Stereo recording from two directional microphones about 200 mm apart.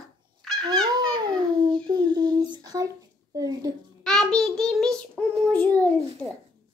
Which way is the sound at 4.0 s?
Centre (ahead or behind).